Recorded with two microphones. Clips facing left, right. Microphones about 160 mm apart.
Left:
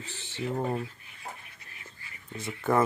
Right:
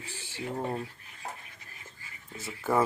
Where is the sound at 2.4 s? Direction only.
5° right (ahead or behind).